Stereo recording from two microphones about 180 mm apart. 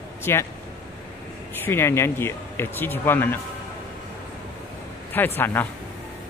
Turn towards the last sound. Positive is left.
turn(degrees=10)  # may be behind; listen again after turning